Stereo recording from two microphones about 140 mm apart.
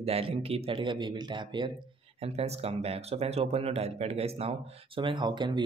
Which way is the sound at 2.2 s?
50° right (ahead or behind).